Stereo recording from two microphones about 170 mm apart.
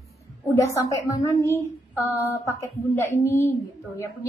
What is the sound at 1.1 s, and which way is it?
A woman's voice, 20° left (ahead or behind).